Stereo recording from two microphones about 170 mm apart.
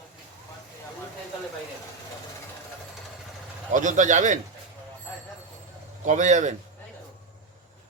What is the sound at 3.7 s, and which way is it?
Speech, 50° right (ahead or behind).